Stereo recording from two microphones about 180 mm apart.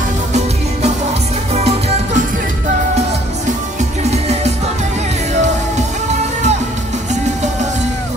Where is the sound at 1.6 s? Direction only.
35° right (ahead or behind).